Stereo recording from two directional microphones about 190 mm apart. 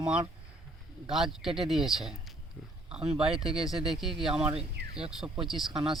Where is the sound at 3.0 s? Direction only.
30° right (ahead or behind).